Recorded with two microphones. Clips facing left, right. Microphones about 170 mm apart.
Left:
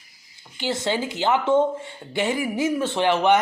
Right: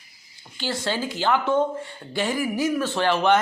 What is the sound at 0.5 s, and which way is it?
Speech, 20° left (ahead or behind).